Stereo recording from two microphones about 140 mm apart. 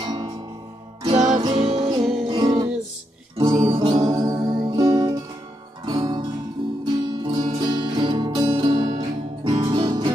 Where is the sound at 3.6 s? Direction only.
40° right (ahead or behind).